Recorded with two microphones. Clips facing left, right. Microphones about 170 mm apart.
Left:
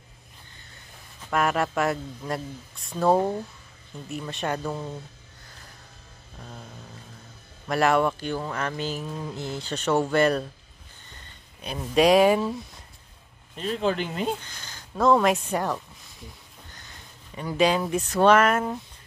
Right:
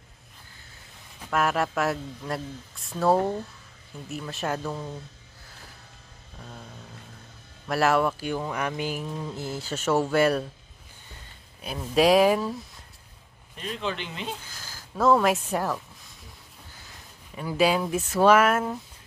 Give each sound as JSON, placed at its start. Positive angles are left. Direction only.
{"t": 1.3, "sound": "speech", "side_deg": 0}
{"t": 3.2, "sound": "speech", "side_deg": 10}
{"t": 4.1, "sound": "speech", "side_deg": 0}
{"t": 6.4, "sound": "vehicle", "side_deg": 5}
{"t": 7.6, "sound": "speech", "side_deg": -5}
{"t": 11.6, "sound": "speech", "side_deg": 0}
{"t": 13.6, "sound": "speech", "side_deg": 35}
{"t": 14.4, "sound": "speech", "side_deg": -5}